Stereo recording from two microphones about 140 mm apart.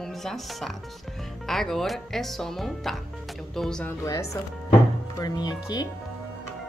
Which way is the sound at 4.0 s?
20° left (ahead or behind).